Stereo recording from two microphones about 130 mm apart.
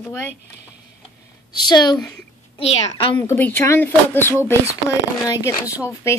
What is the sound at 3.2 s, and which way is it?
Speech, 15° left (ahead or behind).